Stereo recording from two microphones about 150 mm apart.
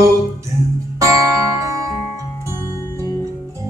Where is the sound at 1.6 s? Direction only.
20° right (ahead or behind).